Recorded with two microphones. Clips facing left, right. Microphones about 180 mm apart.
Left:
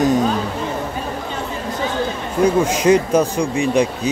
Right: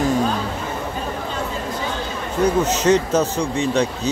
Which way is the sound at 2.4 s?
10° left (ahead or behind).